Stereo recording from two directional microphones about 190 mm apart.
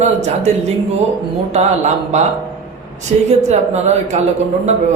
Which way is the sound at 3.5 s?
35° right (ahead or behind).